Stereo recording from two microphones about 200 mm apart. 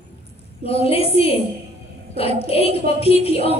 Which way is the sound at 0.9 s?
30° left (ahead or behind).